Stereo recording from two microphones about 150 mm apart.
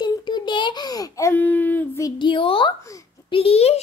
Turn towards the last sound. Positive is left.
turn(degrees=40)  # may be behind; listen again after turning